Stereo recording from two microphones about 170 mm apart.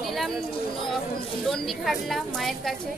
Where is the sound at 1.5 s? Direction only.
Centre (ahead or behind).